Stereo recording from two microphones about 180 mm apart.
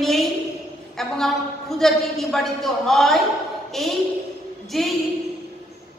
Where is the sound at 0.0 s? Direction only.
Centre (ahead or behind).